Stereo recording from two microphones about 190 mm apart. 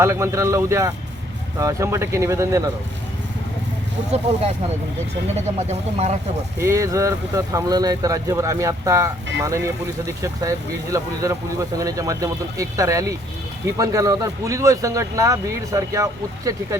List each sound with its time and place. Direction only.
0.0 s speech: 15° right (ahead or behind)
4.1 s speech: 35° right (ahead or behind)
5.5 s speech: 35° right (ahead or behind)
6.6 s speech: 15° right (ahead or behind)